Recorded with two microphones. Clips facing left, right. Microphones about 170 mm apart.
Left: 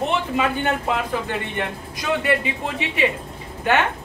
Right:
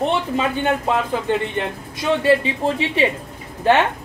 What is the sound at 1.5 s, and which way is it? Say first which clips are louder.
A woman's voice: right 3 dB; 30° right (ahead or behind).